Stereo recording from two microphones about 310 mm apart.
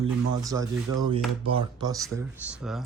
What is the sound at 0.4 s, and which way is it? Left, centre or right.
Speech, centre.